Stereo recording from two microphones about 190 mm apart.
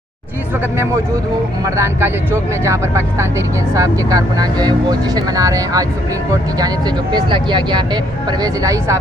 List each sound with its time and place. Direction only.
1.8 s speech: 15° right (ahead or behind)